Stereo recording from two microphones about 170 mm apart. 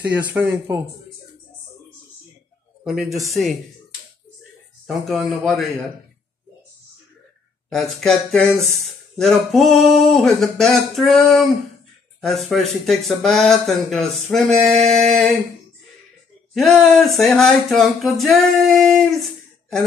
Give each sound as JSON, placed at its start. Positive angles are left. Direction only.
{"t": 0.0, "sound": "speech", "side_deg": -10}
{"t": 2.8, "sound": "speech", "side_deg": 0}
{"t": 4.8, "sound": "speech", "side_deg": 0}
{"t": 7.7, "sound": "speech", "side_deg": 0}
{"t": 16.5, "sound": "speech", "side_deg": 0}